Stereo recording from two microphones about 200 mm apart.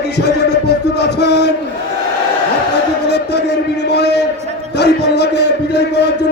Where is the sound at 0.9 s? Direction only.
55° left (ahead or behind).